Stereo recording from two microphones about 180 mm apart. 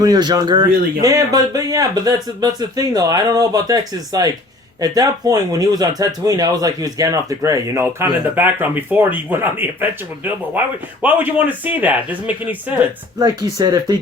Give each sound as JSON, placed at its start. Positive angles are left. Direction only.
{"t": 0.0, "sound": "speech", "side_deg": -20}
{"t": 11.0, "sound": "speech", "side_deg": -10}
{"t": 13.1, "sound": "speech", "side_deg": -20}